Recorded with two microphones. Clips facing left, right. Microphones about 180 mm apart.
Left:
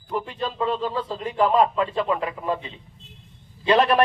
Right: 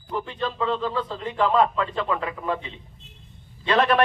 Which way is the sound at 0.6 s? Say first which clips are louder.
Left 1 dB; 10° left (ahead or behind).